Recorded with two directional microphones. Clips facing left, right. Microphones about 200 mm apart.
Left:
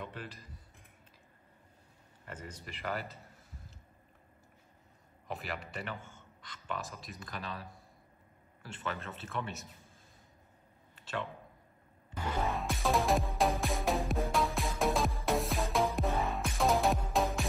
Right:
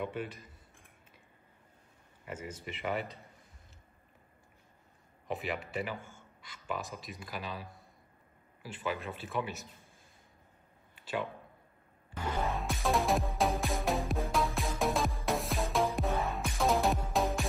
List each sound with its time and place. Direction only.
0.0 s speech: centre (ahead or behind)
2.2 s speech: 5° right (ahead or behind)
5.3 s speech: centre (ahead or behind)
8.9 s speech: 5° right (ahead or behind)
12.2 s music: 5° right (ahead or behind)